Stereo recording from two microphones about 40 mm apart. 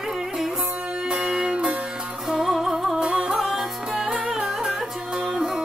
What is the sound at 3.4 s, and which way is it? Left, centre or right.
Music, centre.